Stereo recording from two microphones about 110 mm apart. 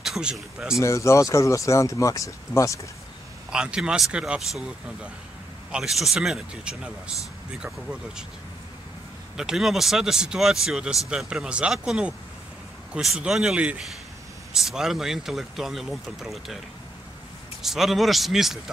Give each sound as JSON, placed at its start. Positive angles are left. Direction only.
{"t": 0.0, "sound": "speech", "side_deg": -5}
{"t": 0.7, "sound": "speech", "side_deg": 30}
{"t": 3.5, "sound": "speech", "side_deg": -10}
{"t": 9.4, "sound": "speech", "side_deg": -5}
{"t": 17.6, "sound": "speech", "side_deg": 0}